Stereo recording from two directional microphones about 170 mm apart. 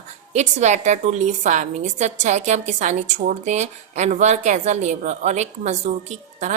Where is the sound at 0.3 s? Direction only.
45° right (ahead or behind).